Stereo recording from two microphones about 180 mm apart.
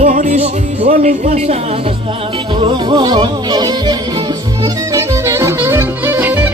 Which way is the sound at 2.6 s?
25° right (ahead or behind).